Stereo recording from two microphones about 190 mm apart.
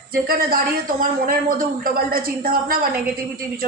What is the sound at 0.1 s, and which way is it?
A woman's voice, 50° right (ahead or behind).